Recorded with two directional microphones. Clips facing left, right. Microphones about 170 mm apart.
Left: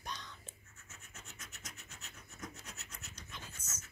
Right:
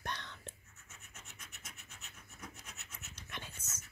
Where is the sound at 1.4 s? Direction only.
40° left (ahead or behind).